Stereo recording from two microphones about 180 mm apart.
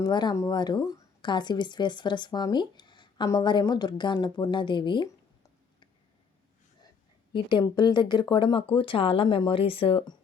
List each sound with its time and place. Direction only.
0.0 s speech: 25° left (ahead or behind)
7.3 s speech: 25° left (ahead or behind)